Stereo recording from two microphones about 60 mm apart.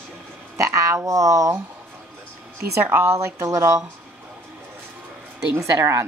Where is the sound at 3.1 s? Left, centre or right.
Right.